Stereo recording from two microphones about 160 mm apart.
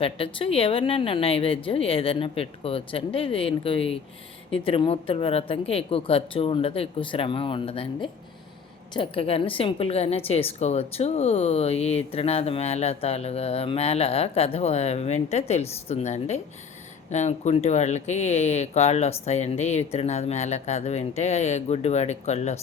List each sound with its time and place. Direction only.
0.0 s a woman's voice: 35° left (ahead or behind)